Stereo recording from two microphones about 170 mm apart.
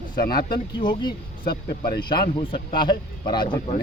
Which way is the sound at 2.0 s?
25° left (ahead or behind).